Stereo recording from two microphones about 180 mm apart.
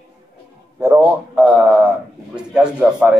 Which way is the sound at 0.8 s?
10° right (ahead or behind).